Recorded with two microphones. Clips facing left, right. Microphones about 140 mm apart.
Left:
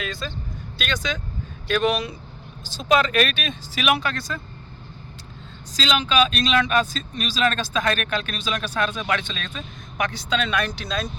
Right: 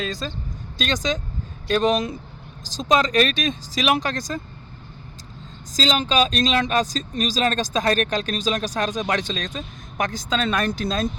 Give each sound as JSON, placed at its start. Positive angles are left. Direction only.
{"t": 0.0, "sound": "speech", "side_deg": -35}
{"t": 5.7, "sound": "speech", "side_deg": -40}